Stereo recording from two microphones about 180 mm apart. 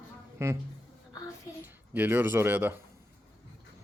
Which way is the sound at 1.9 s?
10° right (ahead or behind).